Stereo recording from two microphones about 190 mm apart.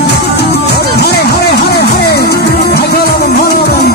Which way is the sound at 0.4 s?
60° left (ahead or behind).